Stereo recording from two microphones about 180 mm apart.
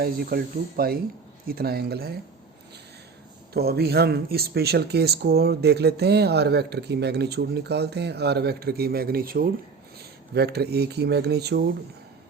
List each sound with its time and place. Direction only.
0.0 s speech: 60° right (ahead or behind)
3.5 s speech: 60° right (ahead or behind)